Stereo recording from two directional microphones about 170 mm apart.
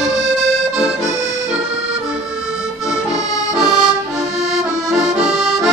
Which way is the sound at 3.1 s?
20° left (ahead or behind).